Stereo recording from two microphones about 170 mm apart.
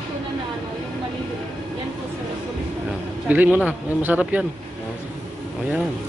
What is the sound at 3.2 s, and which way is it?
Speech, 10° right (ahead or behind).